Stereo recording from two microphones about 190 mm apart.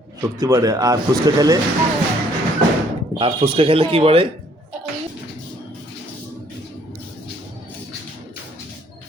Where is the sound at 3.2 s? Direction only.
30° right (ahead or behind).